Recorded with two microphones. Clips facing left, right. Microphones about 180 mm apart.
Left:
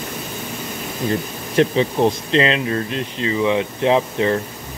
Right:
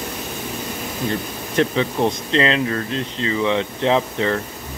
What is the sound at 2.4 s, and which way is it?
Speech, 25° left (ahead or behind).